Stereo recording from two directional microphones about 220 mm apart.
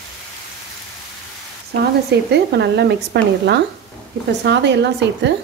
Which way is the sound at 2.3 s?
50° right (ahead or behind).